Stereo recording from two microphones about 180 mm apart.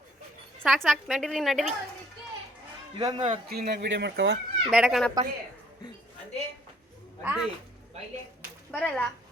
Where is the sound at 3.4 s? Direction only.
60° right (ahead or behind); by 4.4 s 75° right (ahead or behind).